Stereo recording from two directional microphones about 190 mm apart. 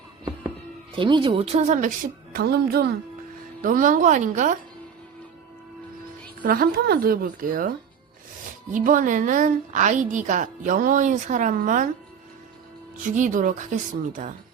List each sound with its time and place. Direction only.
0.9 s a woman's voice: 25° right (ahead or behind)
2.3 s speech: 55° right (ahead or behind)
3.6 s a woman's voice: 45° right (ahead or behind)
6.4 s a woman's voice: 50° right (ahead or behind)
8.7 s a woman's voice: 45° right (ahead or behind)
13.0 s a woman's voice: 40° right (ahead or behind)